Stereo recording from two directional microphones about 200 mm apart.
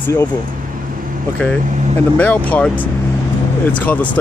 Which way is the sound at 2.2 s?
10° left (ahead or behind).